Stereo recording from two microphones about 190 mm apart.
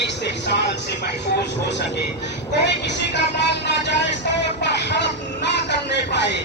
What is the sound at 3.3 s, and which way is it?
Vehicle, 65° left (ahead or behind).